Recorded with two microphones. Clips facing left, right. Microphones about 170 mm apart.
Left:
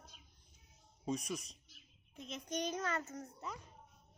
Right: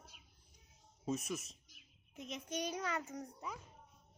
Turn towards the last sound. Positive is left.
turn(degrees=-10)  # may be behind; listen again after turning